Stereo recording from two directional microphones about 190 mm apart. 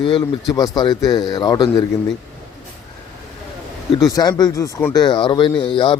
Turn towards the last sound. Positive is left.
turn(degrees=25)  # may be behind; listen again after turning